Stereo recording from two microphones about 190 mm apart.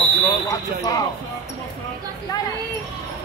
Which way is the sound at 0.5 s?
20° left (ahead or behind).